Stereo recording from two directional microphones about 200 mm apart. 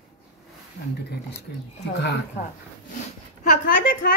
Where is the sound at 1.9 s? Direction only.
55° left (ahead or behind).